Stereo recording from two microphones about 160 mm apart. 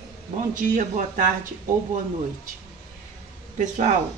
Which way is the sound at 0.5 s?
55° right (ahead or behind).